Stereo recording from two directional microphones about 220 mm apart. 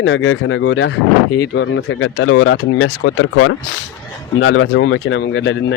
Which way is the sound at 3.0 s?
65° left (ahead or behind).